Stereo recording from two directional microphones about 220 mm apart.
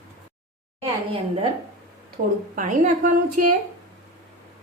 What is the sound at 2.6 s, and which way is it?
Speech, 35° right (ahead or behind).